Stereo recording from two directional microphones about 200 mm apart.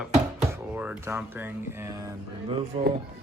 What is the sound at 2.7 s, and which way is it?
Speech, 30° right (ahead or behind).